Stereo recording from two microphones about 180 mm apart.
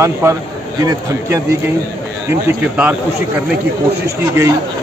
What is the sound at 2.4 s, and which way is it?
Speech, 10° right (ahead or behind).